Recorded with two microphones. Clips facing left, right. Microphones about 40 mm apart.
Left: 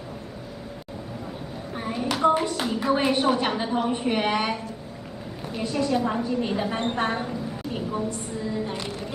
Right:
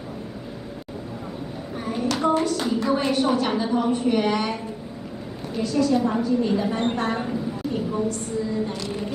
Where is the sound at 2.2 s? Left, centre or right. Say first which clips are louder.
Left 1 dB; left.